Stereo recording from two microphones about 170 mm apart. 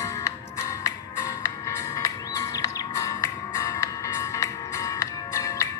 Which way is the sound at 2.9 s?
20° left (ahead or behind).